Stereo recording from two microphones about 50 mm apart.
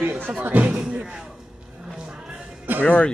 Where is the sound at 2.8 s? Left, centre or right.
Left.